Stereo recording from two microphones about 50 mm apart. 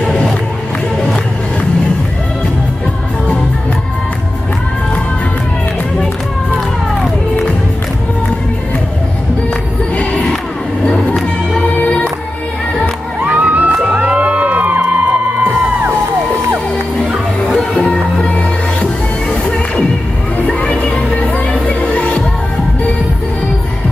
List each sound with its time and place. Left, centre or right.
0.0 s crowd: centre
11.8 s music: left
13.2 s music: right
18.2 s music: left
20.4 s music: left